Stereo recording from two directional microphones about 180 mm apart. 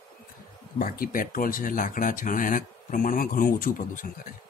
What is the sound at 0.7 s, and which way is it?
Speech, 55° left (ahead or behind).